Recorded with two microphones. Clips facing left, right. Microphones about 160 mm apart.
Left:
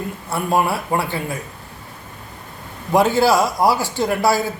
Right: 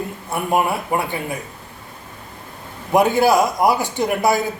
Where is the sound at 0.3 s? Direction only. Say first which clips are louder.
Even; 20° right (ahead or behind).